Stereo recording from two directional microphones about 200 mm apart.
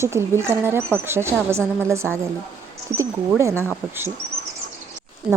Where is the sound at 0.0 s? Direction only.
15° right (ahead or behind).